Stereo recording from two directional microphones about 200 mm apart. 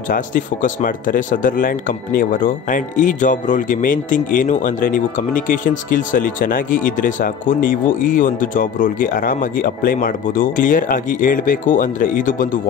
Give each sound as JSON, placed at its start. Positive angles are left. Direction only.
{"t": 0.1, "sound": "speech", "side_deg": 40}